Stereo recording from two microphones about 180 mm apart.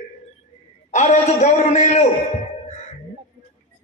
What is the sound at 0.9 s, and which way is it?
A man's voice, 40° left (ahead or behind).